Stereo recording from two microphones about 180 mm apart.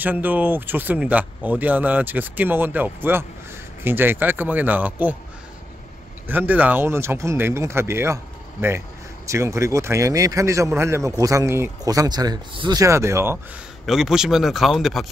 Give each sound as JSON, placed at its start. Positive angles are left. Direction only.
{"t": 0.0, "sound": "speech", "side_deg": -10}
{"t": 6.2, "sound": "speech", "side_deg": -10}
{"t": 13.8, "sound": "speech", "side_deg": 0}